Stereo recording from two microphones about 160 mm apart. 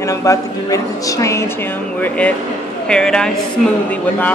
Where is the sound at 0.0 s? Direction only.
20° left (ahead or behind).